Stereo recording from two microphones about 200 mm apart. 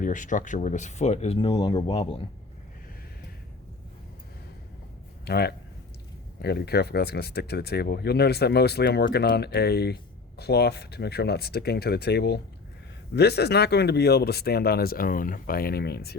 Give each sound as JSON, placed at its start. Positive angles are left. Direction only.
{"t": 0.0, "sound": "speech", "side_deg": 40}
{"t": 5.2, "sound": "speech", "side_deg": 55}